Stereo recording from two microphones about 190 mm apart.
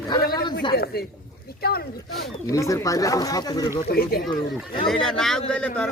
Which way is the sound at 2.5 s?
15° left (ahead or behind).